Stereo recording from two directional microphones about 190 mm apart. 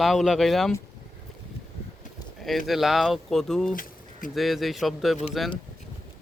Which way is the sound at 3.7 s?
45° left (ahead or behind).